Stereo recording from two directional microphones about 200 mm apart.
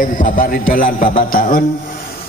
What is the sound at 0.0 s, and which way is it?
Music, 45° left (ahead or behind).